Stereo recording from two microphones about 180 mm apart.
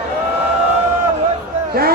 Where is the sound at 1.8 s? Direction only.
55° right (ahead or behind).